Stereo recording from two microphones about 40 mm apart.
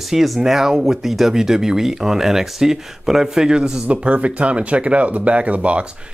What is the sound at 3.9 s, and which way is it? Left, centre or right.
Speech, right.